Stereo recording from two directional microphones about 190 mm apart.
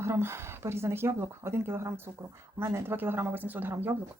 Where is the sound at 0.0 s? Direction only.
15° right (ahead or behind).